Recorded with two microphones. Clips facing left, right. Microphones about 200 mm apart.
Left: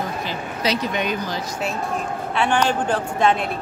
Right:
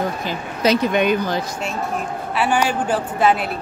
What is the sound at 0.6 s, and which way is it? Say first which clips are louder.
Speech: right 7 dB; 55° right (ahead or behind).